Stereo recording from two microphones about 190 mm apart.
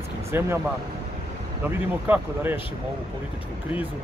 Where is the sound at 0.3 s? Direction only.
15° right (ahead or behind).